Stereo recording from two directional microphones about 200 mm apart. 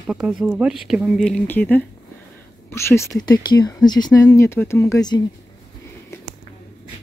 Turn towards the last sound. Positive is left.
turn(degrees=20)  # may be behind; listen again after turning